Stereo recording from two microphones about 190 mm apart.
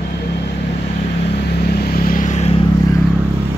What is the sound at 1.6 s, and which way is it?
Vehicle, 60° left (ahead or behind).